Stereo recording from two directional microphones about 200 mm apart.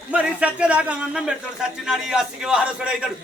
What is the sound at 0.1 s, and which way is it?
Speech, 5° right (ahead or behind).